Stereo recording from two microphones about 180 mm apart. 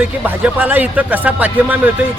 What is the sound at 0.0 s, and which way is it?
Speech, 10° right (ahead or behind).